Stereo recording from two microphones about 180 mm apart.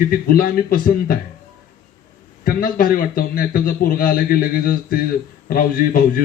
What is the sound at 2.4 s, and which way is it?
A man's voice, 55° left (ahead or behind).